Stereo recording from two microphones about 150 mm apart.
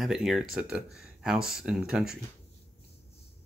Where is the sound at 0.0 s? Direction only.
Centre (ahead or behind).